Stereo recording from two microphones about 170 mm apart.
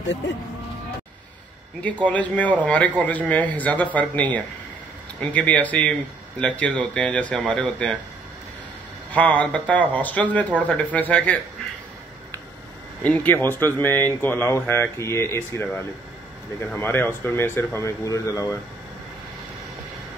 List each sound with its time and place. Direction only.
2.0 s speech: 10° left (ahead or behind)
9.1 s speech: 10° left (ahead or behind)
13.0 s speech: 10° left (ahead or behind)